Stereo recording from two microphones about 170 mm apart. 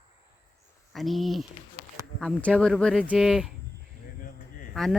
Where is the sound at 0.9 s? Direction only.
Centre (ahead or behind).